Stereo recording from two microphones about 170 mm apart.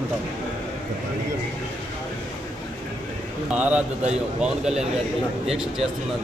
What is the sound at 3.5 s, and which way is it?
Speech, 10° right (ahead or behind).